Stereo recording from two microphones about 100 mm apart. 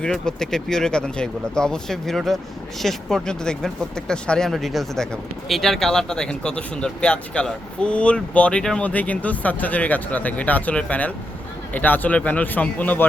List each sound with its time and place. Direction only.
0.0 s speech: 5° left (ahead or behind)